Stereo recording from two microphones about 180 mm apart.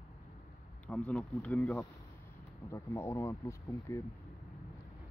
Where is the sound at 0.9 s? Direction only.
5° left (ahead or behind).